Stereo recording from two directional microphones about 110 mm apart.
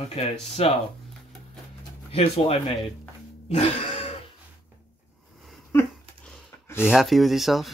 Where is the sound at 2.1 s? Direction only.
70° left (ahead or behind).